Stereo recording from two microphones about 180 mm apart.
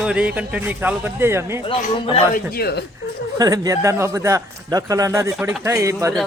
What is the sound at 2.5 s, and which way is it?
Speech, 65° left (ahead or behind).